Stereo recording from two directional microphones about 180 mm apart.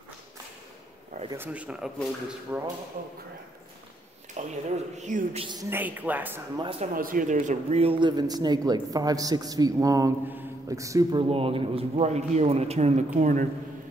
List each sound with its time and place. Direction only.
1.3 s speech: 10° right (ahead or behind)
4.4 s speech: 40° right (ahead or behind)
5.5 s speech: 15° right (ahead or behind)
6.5 s speech: 30° right (ahead or behind)
7.0 s speech: 50° right (ahead or behind)